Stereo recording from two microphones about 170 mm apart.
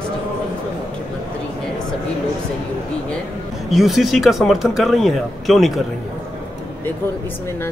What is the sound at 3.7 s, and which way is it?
Speech, centre (ahead or behind).